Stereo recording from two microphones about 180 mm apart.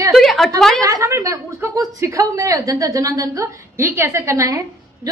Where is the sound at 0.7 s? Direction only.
20° right (ahead or behind).